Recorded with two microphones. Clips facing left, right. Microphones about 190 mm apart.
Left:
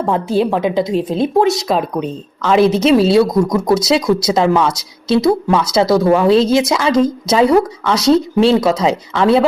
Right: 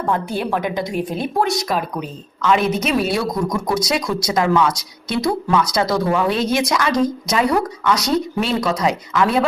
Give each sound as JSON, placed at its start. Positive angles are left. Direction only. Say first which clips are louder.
{"t": 0.0, "sound": "speech", "louder": "left 6 dB", "side_deg": 25}